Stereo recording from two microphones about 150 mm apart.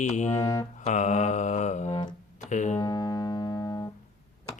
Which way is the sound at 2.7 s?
25° left (ahead or behind).